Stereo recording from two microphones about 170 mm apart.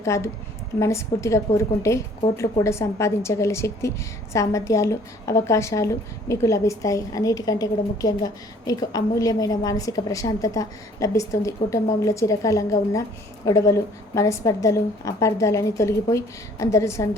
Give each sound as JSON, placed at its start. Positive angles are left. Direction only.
{"t": 0.0, "sound": "a woman's voice", "side_deg": 15}